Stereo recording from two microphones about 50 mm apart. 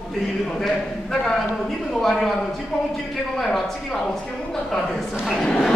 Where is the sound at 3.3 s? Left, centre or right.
Centre.